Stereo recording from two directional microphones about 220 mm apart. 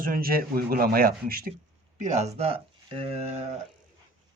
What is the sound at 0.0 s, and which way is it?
Speech, 40° right (ahead or behind).